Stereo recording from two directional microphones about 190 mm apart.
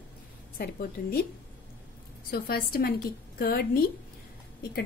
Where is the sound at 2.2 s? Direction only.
50° left (ahead or behind).